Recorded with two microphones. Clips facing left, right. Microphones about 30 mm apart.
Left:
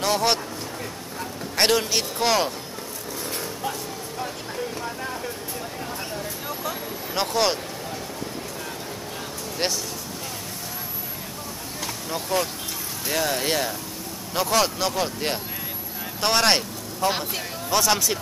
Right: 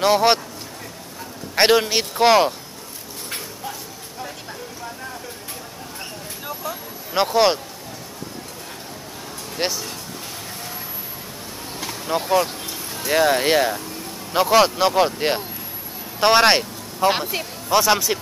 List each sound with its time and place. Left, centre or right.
0.0 s speech: right
1.5 s speech: right
7.2 s speech: centre
9.6 s speech: centre
12.1 s speech: right